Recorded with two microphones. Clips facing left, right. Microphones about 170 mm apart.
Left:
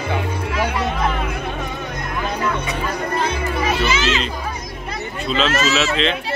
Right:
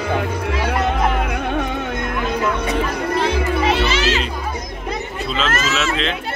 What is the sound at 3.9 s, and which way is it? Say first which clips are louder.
Speech: right 1 dB; 35° right (ahead or behind).